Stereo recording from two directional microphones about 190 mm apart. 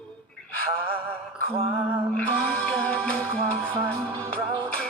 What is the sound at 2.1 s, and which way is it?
Music, 5° left (ahead or behind).